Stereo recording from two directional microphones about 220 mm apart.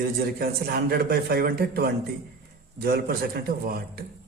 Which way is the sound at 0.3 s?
45° right (ahead or behind).